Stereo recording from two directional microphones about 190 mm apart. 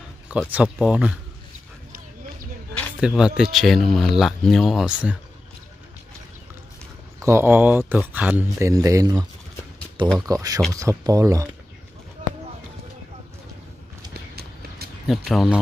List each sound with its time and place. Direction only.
0.3 s a man's voice: 5° right (ahead or behind)
3.0 s speech: 5° right (ahead or behind)
7.2 s a man's voice: 15° right (ahead or behind)
10.2 s a man's voice: 20° right (ahead or behind)
15.0 s speech: centre (ahead or behind)